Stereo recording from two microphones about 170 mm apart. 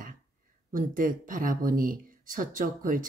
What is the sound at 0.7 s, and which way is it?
Speech, 50° right (ahead or behind).